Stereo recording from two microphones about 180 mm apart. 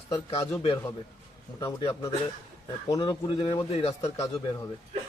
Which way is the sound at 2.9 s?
25° left (ahead or behind).